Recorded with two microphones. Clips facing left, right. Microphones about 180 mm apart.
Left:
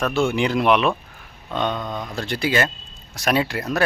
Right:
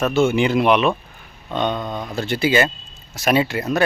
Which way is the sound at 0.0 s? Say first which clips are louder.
Right 3 dB; centre (ahead or behind).